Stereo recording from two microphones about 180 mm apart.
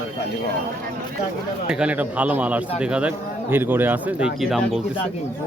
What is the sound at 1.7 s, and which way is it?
Speech, 5° right (ahead or behind).